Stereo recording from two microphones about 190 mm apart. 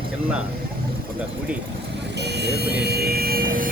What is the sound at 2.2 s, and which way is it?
Vehicle, 60° right (ahead or behind).